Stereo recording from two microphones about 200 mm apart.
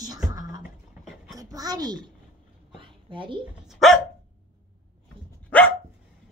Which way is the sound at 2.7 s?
25° right (ahead or behind).